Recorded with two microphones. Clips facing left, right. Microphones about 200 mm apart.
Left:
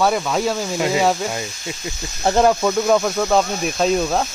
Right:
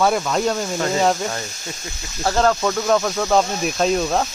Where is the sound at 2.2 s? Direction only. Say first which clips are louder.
Left 3 dB; 20° left (ahead or behind).